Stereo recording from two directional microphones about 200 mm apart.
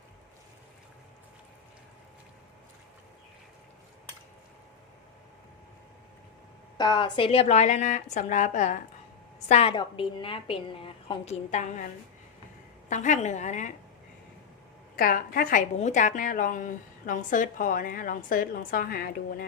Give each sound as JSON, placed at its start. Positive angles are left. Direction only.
{"t": 6.7, "sound": "a woman's voice", "side_deg": 20}
{"t": 12.9, "sound": "a woman's voice", "side_deg": 40}
{"t": 14.9, "sound": "a woman's voice", "side_deg": 45}